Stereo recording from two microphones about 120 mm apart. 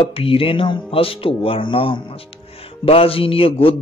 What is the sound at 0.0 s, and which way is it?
A man's voice, 50° left (ahead or behind).